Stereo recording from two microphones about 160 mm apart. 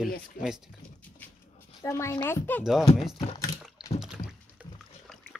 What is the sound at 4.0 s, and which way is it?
Rowboat, 5° right (ahead or behind).